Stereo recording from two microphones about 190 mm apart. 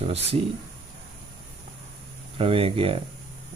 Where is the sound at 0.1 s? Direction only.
35° right (ahead or behind).